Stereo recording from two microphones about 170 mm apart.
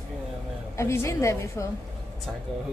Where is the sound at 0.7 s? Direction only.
15° left (ahead or behind).